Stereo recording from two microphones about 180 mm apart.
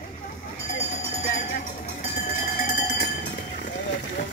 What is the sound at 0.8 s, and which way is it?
Music, 40° left (ahead or behind).